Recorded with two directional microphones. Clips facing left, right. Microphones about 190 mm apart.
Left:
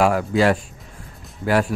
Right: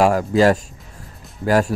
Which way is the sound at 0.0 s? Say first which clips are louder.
Right 3 dB; 40° right (ahead or behind).